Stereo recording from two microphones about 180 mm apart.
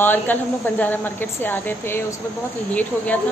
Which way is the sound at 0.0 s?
10° left (ahead or behind).